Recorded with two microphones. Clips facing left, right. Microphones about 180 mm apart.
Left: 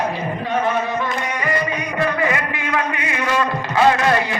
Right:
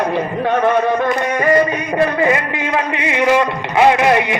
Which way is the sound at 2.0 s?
25° right (ahead or behind).